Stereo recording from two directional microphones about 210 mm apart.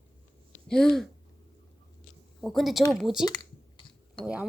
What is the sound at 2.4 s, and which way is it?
Speech, centre (ahead or behind).